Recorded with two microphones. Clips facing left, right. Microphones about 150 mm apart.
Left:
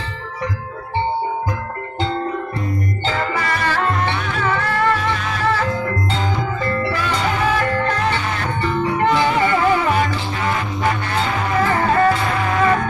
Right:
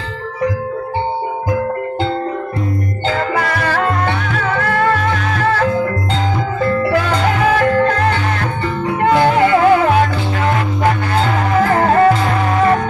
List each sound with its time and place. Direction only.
3.1 s music: 55° right (ahead or behind)
11.6 s music: 50° right (ahead or behind)